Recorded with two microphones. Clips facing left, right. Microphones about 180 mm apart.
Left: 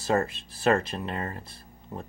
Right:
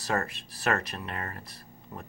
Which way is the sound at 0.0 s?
25° left (ahead or behind).